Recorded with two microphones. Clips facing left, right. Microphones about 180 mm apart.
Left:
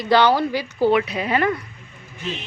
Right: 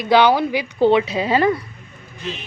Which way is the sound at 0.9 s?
25° right (ahead or behind).